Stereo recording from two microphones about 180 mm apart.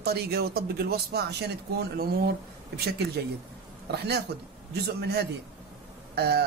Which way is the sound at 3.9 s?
65° right (ahead or behind).